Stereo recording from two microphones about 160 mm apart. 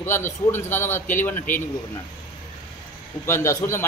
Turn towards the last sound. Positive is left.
turn(degrees=15)  # may be behind; listen again after turning